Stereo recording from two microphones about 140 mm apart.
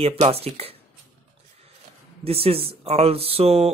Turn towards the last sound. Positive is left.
turn(degrees=-45)  # may be behind; listen again after turning